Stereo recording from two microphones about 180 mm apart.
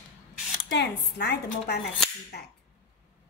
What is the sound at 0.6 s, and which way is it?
A woman's voice, 70° left (ahead or behind).